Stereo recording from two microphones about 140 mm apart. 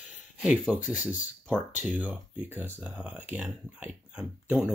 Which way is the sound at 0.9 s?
65° left (ahead or behind).